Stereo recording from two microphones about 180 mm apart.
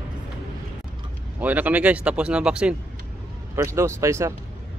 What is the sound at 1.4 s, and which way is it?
Speech, 10° right (ahead or behind).